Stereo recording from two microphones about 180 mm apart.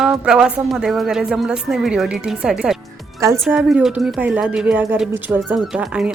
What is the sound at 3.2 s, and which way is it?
Speech, 15° right (ahead or behind).